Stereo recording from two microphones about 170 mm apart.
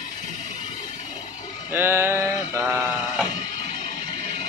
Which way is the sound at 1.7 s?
15° right (ahead or behind).